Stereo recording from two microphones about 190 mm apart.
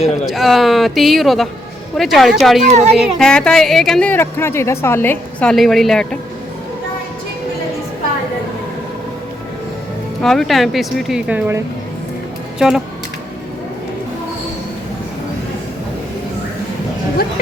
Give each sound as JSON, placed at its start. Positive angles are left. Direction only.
{"t": 0.3, "sound": "a woman's voice", "side_deg": 0}
{"t": 2.6, "sound": "speech", "side_deg": -35}
{"t": 3.0, "sound": "a woman's voice", "side_deg": 5}
{"t": 10.2, "sound": "a woman's voice", "side_deg": 0}